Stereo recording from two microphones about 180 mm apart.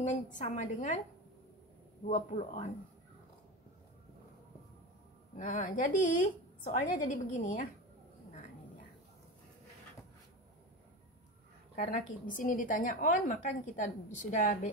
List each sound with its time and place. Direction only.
0.0 s a woman's voice: 45° left (ahead or behind)
2.0 s speech: 40° left (ahead or behind)
5.3 s a woman's voice: 45° left (ahead or behind)
12.3 s a woman's voice: 45° left (ahead or behind)